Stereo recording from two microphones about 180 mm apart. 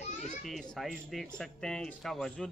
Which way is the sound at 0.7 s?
Centre (ahead or behind).